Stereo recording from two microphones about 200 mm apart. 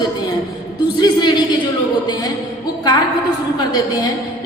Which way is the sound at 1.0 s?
20° left (ahead or behind).